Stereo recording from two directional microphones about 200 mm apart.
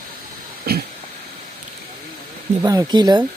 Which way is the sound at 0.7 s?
50° right (ahead or behind).